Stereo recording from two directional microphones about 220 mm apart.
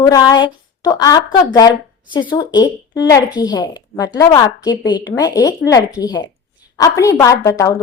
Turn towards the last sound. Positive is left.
turn(degrees=15)  # may be behind; listen again after turning